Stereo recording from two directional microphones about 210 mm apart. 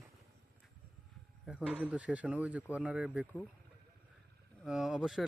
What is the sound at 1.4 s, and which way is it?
Speech, 5° right (ahead or behind).